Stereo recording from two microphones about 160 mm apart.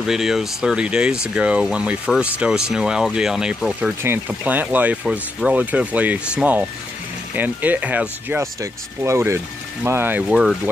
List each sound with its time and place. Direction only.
0.0 s speech: 5° right (ahead or behind)